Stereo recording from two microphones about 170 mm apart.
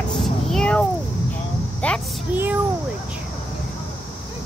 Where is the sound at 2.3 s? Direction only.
10° right (ahead or behind).